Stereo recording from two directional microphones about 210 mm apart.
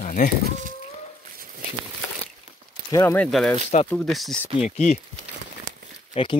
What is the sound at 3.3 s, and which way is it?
Speech, centre (ahead or behind).